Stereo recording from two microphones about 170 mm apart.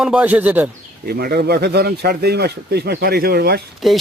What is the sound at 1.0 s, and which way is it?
Speech, 65° right (ahead or behind).